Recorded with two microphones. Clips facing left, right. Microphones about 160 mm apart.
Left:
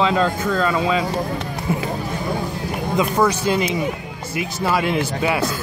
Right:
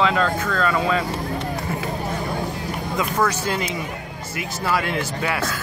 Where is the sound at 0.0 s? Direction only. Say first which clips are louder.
Left 2 dB; 25° left (ahead or behind).